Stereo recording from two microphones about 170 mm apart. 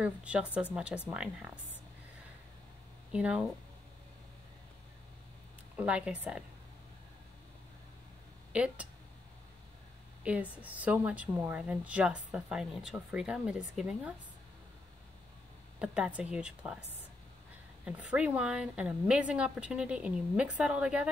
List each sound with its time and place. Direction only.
0.0 s a woman's voice: 5° right (ahead or behind)
3.1 s speech: 5° right (ahead or behind)
5.8 s a woman's voice: 5° right (ahead or behind)
8.5 s a woman's voice: 5° right (ahead or behind)
10.2 s a woman's voice: 10° right (ahead or behind)
15.8 s a woman's voice: 5° right (ahead or behind)
18.1 s a woman's voice: 5° right (ahead or behind)